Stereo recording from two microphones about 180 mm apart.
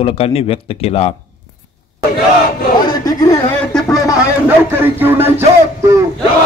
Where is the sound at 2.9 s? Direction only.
20° left (ahead or behind).